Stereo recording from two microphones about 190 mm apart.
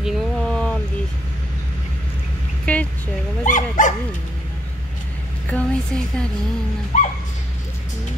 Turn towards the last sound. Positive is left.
turn(degrees=40)  # may be behind; listen again after turning